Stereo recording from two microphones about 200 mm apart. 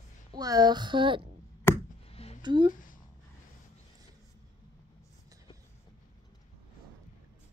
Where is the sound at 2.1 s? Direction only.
30° left (ahead or behind).